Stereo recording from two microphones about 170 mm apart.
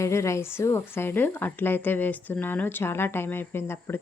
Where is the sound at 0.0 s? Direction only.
15° left (ahead or behind).